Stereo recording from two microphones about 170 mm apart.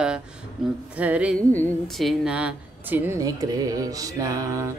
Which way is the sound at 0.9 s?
10° right (ahead or behind).